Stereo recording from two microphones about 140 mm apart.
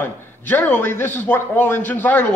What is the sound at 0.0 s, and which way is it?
A man's voice, 15° left (ahead or behind).